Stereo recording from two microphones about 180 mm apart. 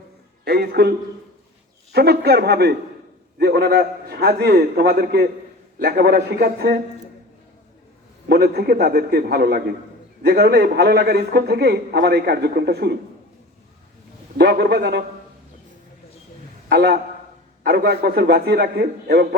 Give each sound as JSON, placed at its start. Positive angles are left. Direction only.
{"t": 0.4, "sound": "a man's voice", "side_deg": -60}
{"t": 8.3, "sound": "a man's voice", "side_deg": -60}
{"t": 14.3, "sound": "a man's voice", "side_deg": -65}
{"t": 16.6, "sound": "a man's voice", "side_deg": -65}